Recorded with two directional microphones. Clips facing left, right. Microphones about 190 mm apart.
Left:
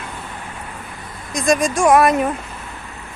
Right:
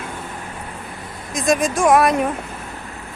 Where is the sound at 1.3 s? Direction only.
Centre (ahead or behind).